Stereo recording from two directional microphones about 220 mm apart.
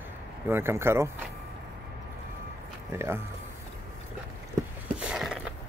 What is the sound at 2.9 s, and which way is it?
Speech, 10° right (ahead or behind).